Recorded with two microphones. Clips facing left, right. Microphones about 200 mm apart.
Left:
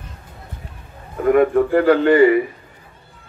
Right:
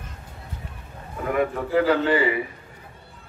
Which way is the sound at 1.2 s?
55° left (ahead or behind).